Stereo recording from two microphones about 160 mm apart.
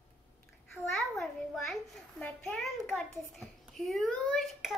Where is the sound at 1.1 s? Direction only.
Centre (ahead or behind).